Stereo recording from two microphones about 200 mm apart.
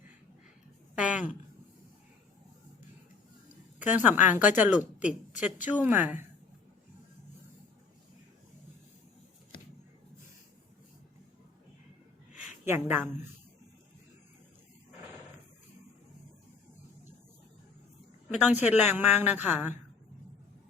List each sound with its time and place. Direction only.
0.9 s a sound: 5° right (ahead or behind)
3.8 s a woman's voice: 10° right (ahead or behind)
5.3 s a woman's voice: 40° left (ahead or behind)
5.6 s a woman's voice: 10° right (ahead or behind)
12.6 s a woman's voice: 10° right (ahead or behind)
18.3 s a woman's voice: 10° right (ahead or behind)